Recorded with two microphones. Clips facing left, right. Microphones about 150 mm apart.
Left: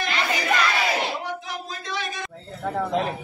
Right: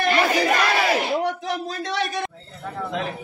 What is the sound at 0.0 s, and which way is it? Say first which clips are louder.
Battle cry: right 7 dB; 55° right (ahead or behind).